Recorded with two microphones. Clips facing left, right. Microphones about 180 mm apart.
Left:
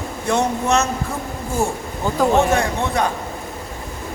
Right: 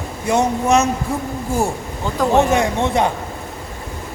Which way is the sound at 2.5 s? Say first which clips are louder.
Right 3 dB; 25° right (ahead or behind).